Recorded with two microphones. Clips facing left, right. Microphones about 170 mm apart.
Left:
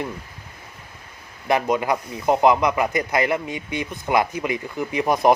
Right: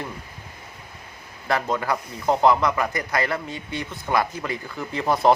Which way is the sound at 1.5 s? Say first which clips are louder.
Left 4 dB; 20° left (ahead or behind).